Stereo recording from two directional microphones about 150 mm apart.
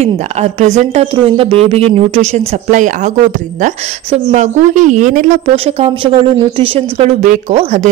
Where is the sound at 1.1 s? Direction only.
40° right (ahead or behind).